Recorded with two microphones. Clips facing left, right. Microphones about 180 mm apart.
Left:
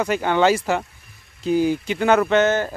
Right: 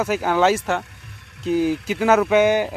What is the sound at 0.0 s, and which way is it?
Speech, 5° right (ahead or behind).